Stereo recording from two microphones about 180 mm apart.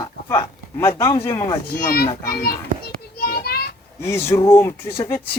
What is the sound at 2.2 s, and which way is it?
Speech, 55° left (ahead or behind).